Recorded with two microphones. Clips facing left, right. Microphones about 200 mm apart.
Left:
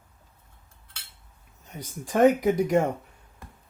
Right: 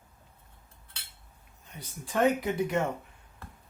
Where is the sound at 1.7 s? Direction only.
45° left (ahead or behind).